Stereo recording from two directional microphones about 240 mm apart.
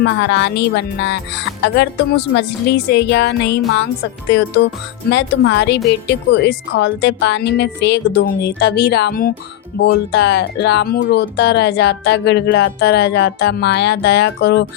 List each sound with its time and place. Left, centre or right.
0.0 s speech: left